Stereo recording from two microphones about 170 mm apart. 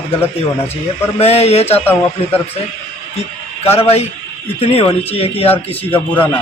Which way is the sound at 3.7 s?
35° left (ahead or behind).